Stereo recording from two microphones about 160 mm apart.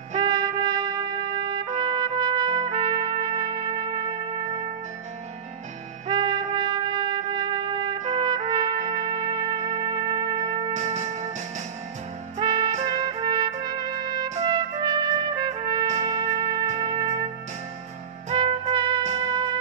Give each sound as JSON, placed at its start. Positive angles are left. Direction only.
{"t": 0.2, "sound": "trumpet", "side_deg": -30}
{"t": 6.0, "sound": "trumpet", "side_deg": -30}
{"t": 10.7, "sound": "music", "side_deg": -45}
{"t": 12.4, "sound": "music", "side_deg": -25}
{"t": 12.7, "sound": "trumpet", "side_deg": -35}
{"t": 16.8, "sound": "music", "side_deg": -25}
{"t": 18.3, "sound": "music", "side_deg": -35}